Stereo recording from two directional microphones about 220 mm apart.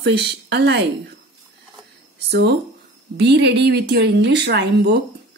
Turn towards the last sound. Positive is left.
turn(degrees=-50)  # may be behind; listen again after turning